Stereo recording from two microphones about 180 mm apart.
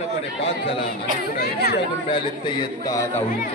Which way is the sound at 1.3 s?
60° left (ahead or behind).